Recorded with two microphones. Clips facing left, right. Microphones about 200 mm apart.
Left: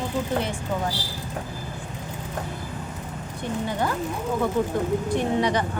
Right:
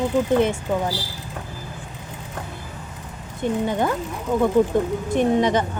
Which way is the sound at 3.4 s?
20° right (ahead or behind).